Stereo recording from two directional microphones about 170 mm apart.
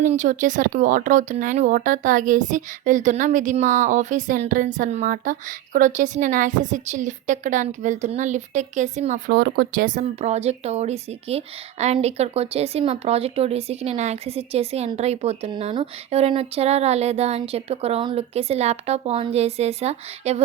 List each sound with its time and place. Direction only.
0.0 s speech: 45° right (ahead or behind)
9.3 s speech: 75° right (ahead or behind)
9.8 s speech: 45° right (ahead or behind)